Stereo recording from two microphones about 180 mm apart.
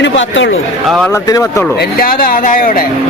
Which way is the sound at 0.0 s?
85° left.